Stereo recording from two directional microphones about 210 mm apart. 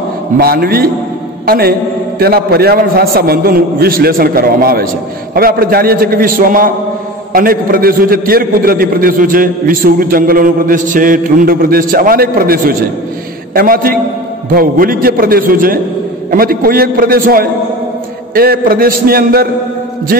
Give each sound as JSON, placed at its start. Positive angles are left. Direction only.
{"t": 0.4, "sound": "a man's voice", "side_deg": -45}